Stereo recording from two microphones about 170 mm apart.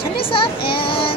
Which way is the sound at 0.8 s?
30° left (ahead or behind).